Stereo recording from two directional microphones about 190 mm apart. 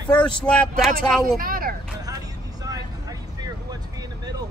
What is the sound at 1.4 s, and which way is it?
Vehicle, 50° right (ahead or behind).